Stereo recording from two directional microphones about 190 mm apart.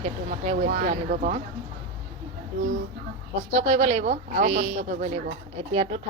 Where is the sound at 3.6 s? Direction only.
35° right (ahead or behind).